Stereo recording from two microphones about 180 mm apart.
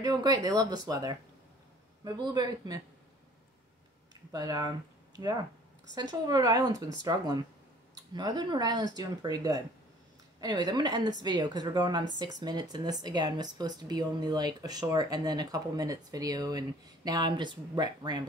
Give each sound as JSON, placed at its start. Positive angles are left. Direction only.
{"t": 0.0, "sound": "speech", "side_deg": -20}
{"t": 4.3, "sound": "speech", "side_deg": -20}